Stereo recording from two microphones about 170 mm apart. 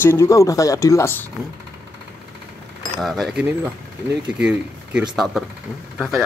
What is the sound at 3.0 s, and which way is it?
Speech, centre (ahead or behind).